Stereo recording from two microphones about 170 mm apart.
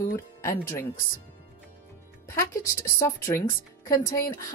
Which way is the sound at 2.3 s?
20° left (ahead or behind).